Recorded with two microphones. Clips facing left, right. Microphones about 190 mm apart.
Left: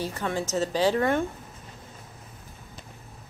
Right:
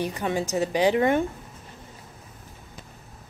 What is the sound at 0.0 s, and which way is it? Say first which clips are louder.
A woman's voice: right 3 dB; 15° right (ahead or behind).